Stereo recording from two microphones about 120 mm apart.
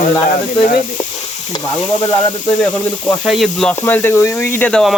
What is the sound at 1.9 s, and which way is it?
Speech, 40° left (ahead or behind).